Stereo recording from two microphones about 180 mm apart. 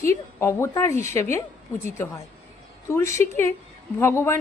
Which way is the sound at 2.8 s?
15° left (ahead or behind).